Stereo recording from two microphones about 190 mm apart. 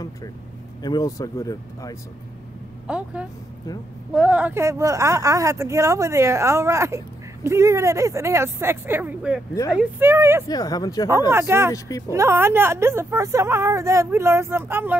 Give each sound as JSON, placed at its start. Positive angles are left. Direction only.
{"t": 0.8, "sound": "speech", "side_deg": 20}
{"t": 2.9, "sound": "speech", "side_deg": -5}
{"t": 10.5, "sound": "speech", "side_deg": 20}
{"t": 11.1, "sound": "speech", "side_deg": -15}